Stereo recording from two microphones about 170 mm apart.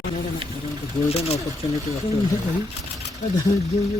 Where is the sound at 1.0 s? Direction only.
35° left (ahead or behind).